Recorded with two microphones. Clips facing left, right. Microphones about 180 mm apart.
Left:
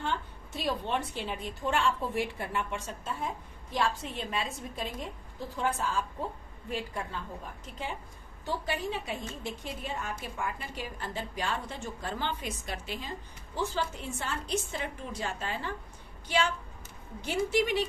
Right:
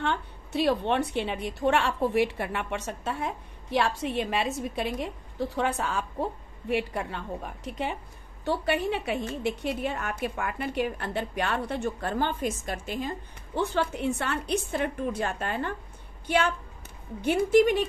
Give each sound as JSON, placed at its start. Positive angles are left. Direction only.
{"t": 0.0, "sound": "a woman's voice", "side_deg": -70}
{"t": 13.6, "sound": "a woman's voice", "side_deg": -65}